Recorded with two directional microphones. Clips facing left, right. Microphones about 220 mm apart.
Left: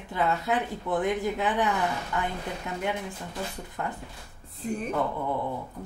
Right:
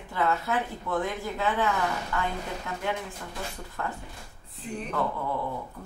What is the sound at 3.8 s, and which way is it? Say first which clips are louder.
Speech: left 1 dB; 20° left (ahead or behind).